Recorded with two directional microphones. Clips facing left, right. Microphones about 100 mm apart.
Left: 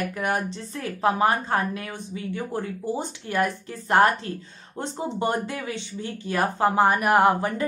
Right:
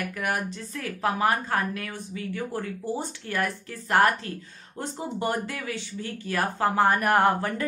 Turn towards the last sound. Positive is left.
turn(degrees=15)  # may be behind; listen again after turning